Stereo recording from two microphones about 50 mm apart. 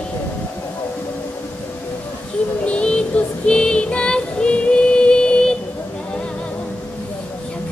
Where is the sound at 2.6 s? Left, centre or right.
Left.